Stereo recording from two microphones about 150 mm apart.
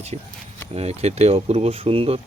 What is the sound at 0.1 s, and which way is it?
Speech, 45° right (ahead or behind).